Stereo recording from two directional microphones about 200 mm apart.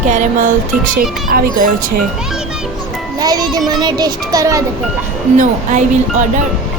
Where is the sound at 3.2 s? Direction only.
20° right (ahead or behind).